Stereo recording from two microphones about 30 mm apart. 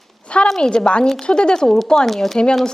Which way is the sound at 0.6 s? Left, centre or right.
Left.